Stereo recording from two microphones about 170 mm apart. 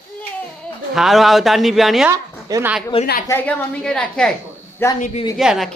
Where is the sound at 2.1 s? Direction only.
20° right (ahead or behind).